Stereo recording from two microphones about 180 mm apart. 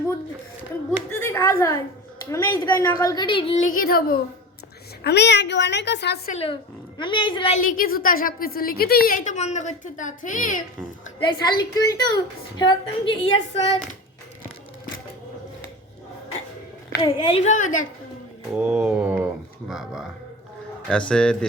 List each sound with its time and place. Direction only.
1.2 s a woman's voice: 15° left (ahead or behind); by 3.6 s 30° left (ahead or behind)
3.8 s a child's voice: 55° left (ahead or behind)
5.0 s a woman's voice: 70° left (ahead or behind)
6.2 s a woman's voice: 35° left (ahead or behind)
7.5 s a woman's voice: 45° left (ahead or behind)
11.2 s a woman's voice: 25° left (ahead or behind)
17.0 s a woman's voice: 30° left (ahead or behind); by 17.8 s 45° left (ahead or behind)
18.5 s speech: 5° right (ahead or behind)
21.1 s speech: 5° left (ahead or behind)